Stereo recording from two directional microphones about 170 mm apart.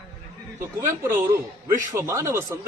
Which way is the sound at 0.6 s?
15° right (ahead or behind).